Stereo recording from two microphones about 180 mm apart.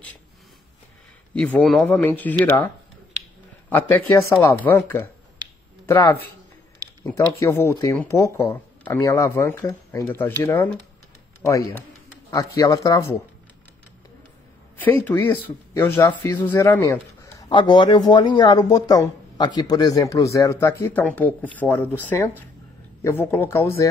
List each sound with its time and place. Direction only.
1.3 s speech: 5° left (ahead or behind)
3.7 s a man's voice: 10° left (ahead or behind)
14.8 s a man's voice: 10° left (ahead or behind)